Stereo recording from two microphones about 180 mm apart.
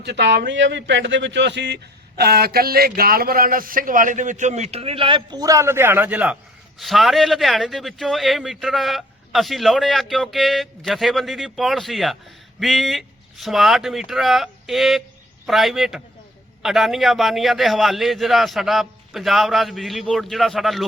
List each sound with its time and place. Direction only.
0.0 s a man's voice: 70° right (ahead or behind); by 20.8 s centre (ahead or behind)